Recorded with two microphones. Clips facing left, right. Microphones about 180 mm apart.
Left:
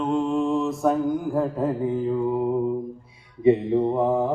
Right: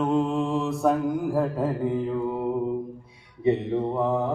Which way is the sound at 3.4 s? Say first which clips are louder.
Left 5 dB; 10° left (ahead or behind).